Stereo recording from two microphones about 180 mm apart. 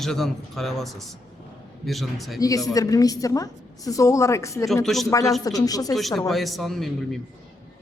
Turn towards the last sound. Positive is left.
turn(degrees=0)  # may be behind; listen again after turning